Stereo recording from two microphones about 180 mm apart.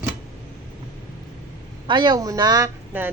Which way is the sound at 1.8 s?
25° right (ahead or behind).